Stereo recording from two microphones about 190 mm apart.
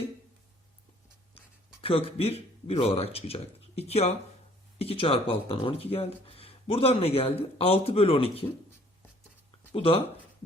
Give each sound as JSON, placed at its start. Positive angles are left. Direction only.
{"t": 1.8, "sound": "speech", "side_deg": 30}
{"t": 9.7, "sound": "speech", "side_deg": 30}